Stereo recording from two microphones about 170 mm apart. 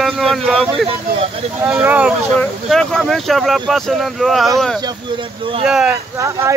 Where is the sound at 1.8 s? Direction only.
15° right (ahead or behind).